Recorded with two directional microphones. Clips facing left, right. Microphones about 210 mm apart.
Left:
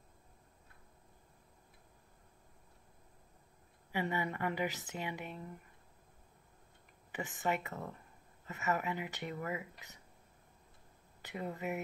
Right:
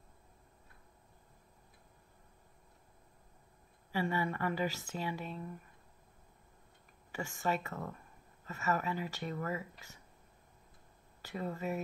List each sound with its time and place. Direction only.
3.9 s a woman's voice: 20° left (ahead or behind)
7.1 s speech: 20° left (ahead or behind)
11.2 s speech: 20° left (ahead or behind)